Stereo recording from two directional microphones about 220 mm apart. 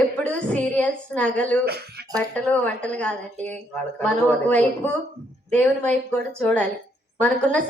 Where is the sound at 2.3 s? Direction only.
5° left (ahead or behind).